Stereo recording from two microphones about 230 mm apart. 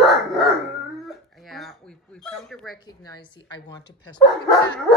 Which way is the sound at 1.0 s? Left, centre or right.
Centre.